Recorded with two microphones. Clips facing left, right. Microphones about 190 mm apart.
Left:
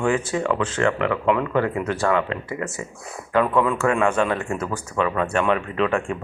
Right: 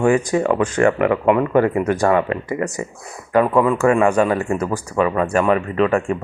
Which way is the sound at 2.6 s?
15° right (ahead or behind).